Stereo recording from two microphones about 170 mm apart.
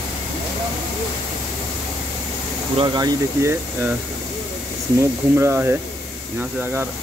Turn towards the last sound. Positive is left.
turn(degrees=-15)  # may be behind; listen again after turning